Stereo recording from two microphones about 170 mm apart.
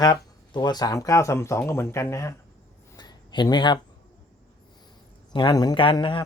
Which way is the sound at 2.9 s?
25° left (ahead or behind).